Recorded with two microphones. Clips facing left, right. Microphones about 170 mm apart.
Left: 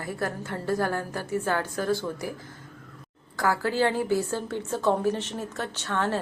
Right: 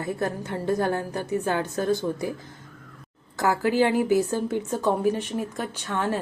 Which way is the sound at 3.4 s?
20° right (ahead or behind).